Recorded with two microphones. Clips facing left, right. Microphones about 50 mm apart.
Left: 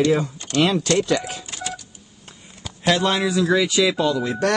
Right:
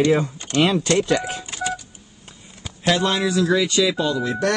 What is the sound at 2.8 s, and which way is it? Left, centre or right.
A man's voice, centre.